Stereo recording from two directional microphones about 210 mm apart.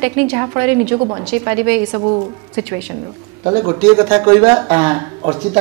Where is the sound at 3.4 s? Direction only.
20° right (ahead or behind).